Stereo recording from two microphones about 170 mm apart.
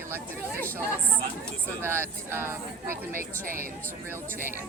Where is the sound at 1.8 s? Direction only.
15° right (ahead or behind).